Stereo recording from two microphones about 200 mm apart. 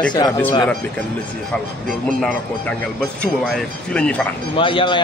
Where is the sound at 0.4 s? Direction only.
10° left (ahead or behind).